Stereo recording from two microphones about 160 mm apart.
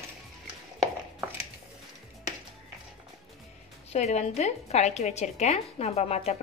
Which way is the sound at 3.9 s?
45° left (ahead or behind).